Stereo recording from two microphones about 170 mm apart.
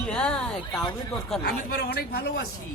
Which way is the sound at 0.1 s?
5° left (ahead or behind).